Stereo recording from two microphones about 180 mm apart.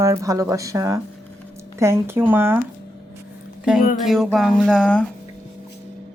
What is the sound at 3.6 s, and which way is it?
Speech, 5° right (ahead or behind).